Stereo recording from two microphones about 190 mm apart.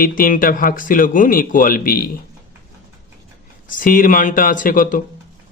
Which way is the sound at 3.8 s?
45° left (ahead or behind).